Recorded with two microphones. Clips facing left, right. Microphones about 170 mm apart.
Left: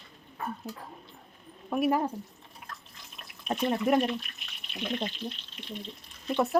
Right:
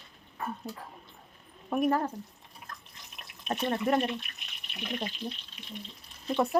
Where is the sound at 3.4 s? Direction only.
15° left (ahead or behind).